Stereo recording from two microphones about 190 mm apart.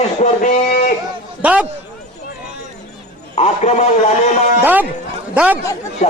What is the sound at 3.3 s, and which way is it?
Speech, 35° left (ahead or behind).